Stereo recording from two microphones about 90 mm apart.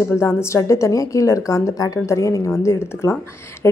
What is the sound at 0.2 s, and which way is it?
Speech, 30° left (ahead or behind).